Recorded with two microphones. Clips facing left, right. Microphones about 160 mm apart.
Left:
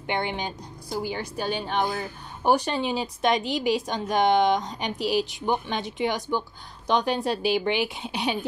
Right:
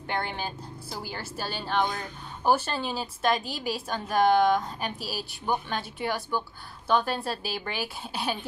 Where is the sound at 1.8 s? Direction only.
5° left (ahead or behind).